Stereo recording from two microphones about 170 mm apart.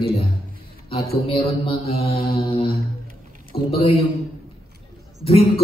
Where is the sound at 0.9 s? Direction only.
35° left (ahead or behind).